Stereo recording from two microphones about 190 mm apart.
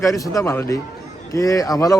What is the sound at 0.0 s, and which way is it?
Speech, 15° left (ahead or behind).